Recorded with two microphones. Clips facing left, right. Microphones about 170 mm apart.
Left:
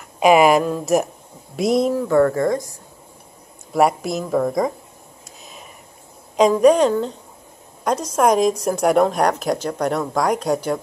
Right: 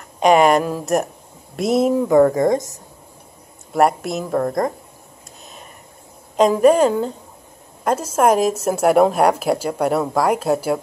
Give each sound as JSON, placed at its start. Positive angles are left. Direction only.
{"t": 0.2, "sound": "a woman's voice", "side_deg": 5}
{"t": 2.0, "sound": "speech", "side_deg": -15}
{"t": 3.7, "sound": "a woman's voice", "side_deg": 0}
{"t": 6.3, "sound": "a woman's voice", "side_deg": 0}